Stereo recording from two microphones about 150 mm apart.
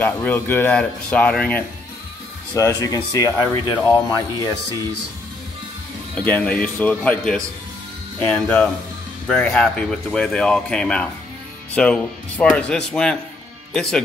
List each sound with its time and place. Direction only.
0.0 s speech: 15° left (ahead or behind)
2.5 s speech: 20° left (ahead or behind)
6.1 s speech: 10° left (ahead or behind)